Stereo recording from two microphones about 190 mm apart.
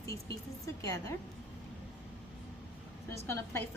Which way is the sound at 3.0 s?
15° left (ahead or behind).